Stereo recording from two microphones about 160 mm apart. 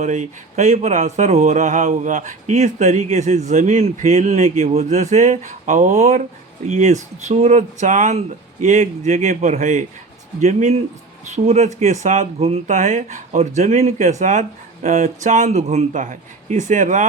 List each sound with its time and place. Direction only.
0.0 s speech: 50° right (ahead or behind)